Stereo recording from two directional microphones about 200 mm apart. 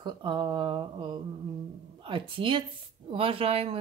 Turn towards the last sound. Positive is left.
turn(degrees=-30)  # may be behind; listen again after turning